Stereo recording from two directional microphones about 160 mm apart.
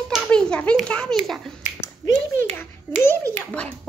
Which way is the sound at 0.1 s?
5° left (ahead or behind).